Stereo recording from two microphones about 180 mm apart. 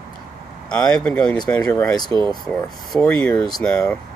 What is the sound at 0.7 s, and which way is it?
Speech, 5° left (ahead or behind).